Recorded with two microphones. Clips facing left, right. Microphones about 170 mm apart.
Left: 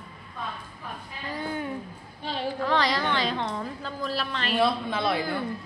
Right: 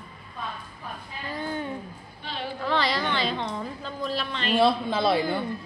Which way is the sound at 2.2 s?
40° left (ahead or behind).